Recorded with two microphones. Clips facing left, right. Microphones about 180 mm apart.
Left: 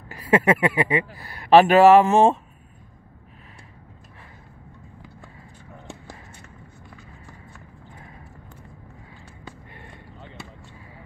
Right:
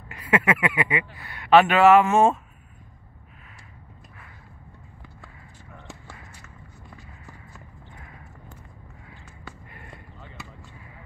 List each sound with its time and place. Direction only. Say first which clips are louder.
0.1 s speech: left 4 dB; 35° left (ahead or behind)
9.4 s basketball bounce: left 2 dB; 20° left (ahead or behind)